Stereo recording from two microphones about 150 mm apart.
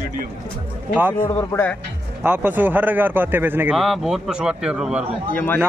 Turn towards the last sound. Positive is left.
turn(degrees=10)  # may be behind; listen again after turning